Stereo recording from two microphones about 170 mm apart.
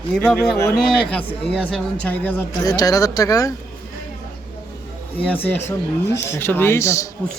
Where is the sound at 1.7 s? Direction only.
10° left (ahead or behind).